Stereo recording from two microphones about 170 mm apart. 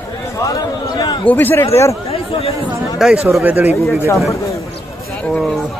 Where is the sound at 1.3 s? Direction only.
10° left (ahead or behind).